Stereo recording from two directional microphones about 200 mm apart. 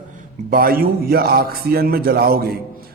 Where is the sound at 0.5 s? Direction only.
45° right (ahead or behind).